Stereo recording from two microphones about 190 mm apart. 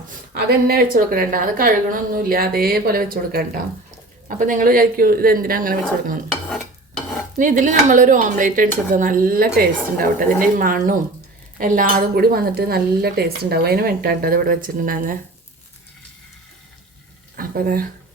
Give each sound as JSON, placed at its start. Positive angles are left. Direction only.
{"t": 0.7, "sound": "speech", "side_deg": -50}
{"t": 7.3, "sound": "speech", "side_deg": -45}
{"t": 17.3, "sound": "speech", "side_deg": -50}